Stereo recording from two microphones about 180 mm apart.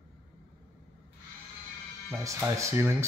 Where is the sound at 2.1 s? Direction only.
15° right (ahead or behind).